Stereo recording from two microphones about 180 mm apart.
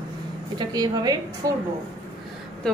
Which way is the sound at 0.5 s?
20° right (ahead or behind).